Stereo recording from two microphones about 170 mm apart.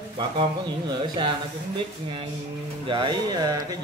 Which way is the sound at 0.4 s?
25° right (ahead or behind).